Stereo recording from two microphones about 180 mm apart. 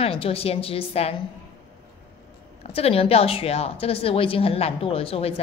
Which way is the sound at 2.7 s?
35° left (ahead or behind).